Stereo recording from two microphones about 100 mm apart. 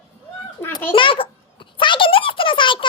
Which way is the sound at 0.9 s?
60° left (ahead or behind).